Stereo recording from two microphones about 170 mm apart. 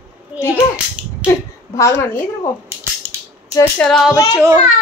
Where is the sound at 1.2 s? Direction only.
15° left (ahead or behind).